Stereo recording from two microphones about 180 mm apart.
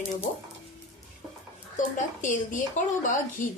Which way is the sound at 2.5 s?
45° left (ahead or behind).